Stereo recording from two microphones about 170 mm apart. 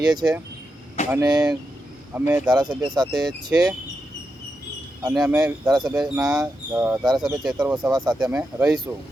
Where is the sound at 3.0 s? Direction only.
25° right (ahead or behind).